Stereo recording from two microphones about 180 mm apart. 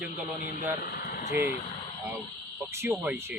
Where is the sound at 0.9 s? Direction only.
60° left (ahead or behind).